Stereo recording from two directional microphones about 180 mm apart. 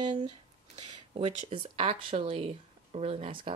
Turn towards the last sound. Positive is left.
turn(degrees=-30)  # may be behind; listen again after turning